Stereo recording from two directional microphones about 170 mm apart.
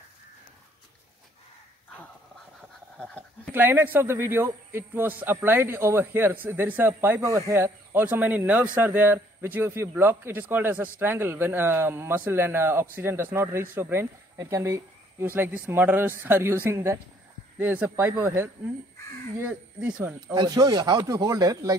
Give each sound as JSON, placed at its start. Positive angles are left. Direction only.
{"t": 3.5, "sound": "a man's voice", "side_deg": -10}
{"t": 20.3, "sound": "speech", "side_deg": -25}